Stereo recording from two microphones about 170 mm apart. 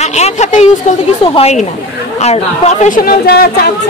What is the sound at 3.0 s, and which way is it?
Speech, 65° left (ahead or behind).